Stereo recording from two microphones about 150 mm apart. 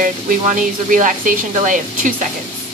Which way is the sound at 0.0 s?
65° right (ahead or behind).